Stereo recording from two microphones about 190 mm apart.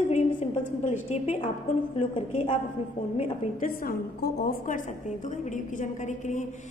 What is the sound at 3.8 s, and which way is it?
A woman's voice, 55° left (ahead or behind).